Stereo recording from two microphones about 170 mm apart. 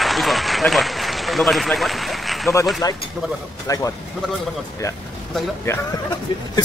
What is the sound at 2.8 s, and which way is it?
A man's voice, 20° left (ahead or behind).